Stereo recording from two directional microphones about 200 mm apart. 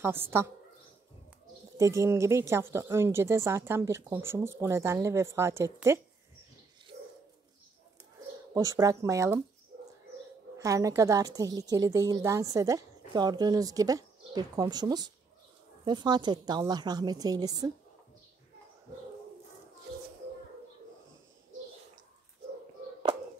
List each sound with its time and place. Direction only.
0.0 s a woman's voice: 10° right (ahead or behind)
1.8 s a woman's voice: 15° right (ahead or behind)
8.5 s a woman's voice: 15° right (ahead or behind)
10.6 s a woman's voice: 15° right (ahead or behind)